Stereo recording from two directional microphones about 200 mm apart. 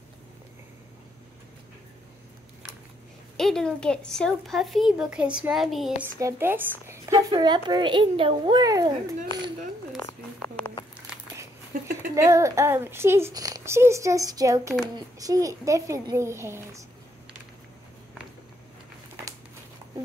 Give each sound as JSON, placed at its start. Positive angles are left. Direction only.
{"t": 3.3, "sound": "speech", "side_deg": 0}
{"t": 6.1, "sound": "a woman's voice", "side_deg": -15}
{"t": 11.7, "sound": "a sound", "side_deg": -45}
{"t": 12.2, "sound": "a child's voice", "side_deg": -15}